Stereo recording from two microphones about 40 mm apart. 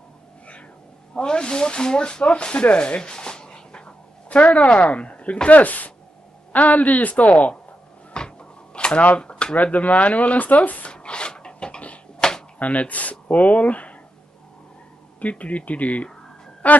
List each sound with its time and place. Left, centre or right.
1.1 s speech: left
4.4 s speech: left
8.1 s a sound: left
9.6 s speech: left
10.9 s a sound: left
12.5 s speech: left
15.1 s speech: left